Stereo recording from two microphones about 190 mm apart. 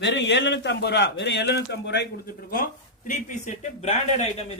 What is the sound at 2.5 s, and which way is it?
Speech, 45° left (ahead or behind).